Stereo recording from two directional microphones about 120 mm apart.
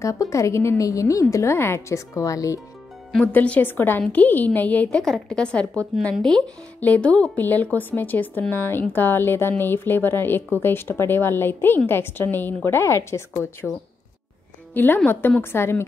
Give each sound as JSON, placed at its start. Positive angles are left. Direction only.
{"t": 0.0, "sound": "speech", "side_deg": 25}
{"t": 3.3, "sound": "speech", "side_deg": 15}